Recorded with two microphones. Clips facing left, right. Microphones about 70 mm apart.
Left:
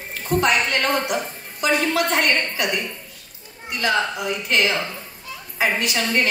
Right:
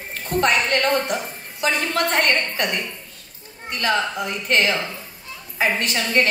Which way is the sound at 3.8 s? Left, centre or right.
Right.